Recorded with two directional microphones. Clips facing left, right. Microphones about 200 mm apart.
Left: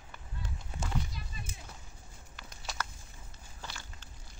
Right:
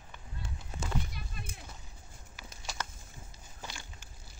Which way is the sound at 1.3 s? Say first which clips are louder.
Right 1 dB; 60° right (ahead or behind).